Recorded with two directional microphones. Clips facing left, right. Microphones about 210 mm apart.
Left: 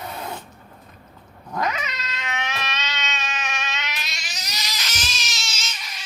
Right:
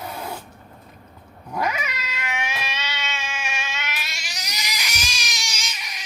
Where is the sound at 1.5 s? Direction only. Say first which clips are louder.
Even; 10° right (ahead or behind).